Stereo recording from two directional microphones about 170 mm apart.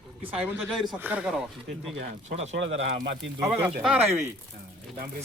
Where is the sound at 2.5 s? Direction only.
90° right.